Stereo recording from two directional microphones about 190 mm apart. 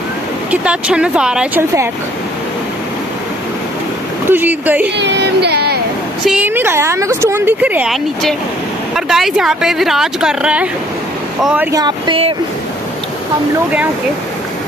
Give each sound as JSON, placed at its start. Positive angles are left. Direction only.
{"t": 0.5, "sound": "speech", "side_deg": -5}
{"t": 4.3, "sound": "a woman's voice", "side_deg": -10}
{"t": 4.9, "sound": "speech", "side_deg": -65}
{"t": 6.2, "sound": "a woman's voice", "side_deg": -5}
{"t": 11.8, "sound": "speech", "side_deg": -25}